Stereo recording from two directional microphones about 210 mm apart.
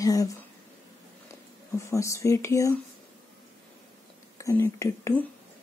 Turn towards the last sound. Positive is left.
turn(degrees=15)  # may be behind; listen again after turning